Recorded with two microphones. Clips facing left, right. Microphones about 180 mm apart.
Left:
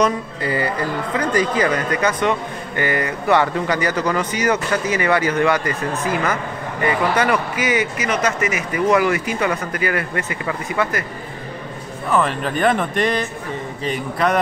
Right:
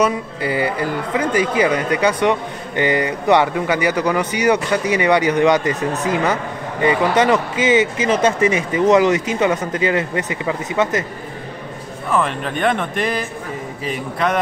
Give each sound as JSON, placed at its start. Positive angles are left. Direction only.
{"t": 0.0, "sound": "a man's voice", "side_deg": -10}
{"t": 12.1, "sound": "speech", "side_deg": 0}